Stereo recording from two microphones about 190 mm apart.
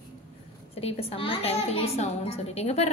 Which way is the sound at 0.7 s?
30° left (ahead or behind).